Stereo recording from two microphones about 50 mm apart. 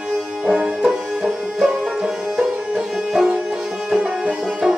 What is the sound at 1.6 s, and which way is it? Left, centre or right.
Music, centre.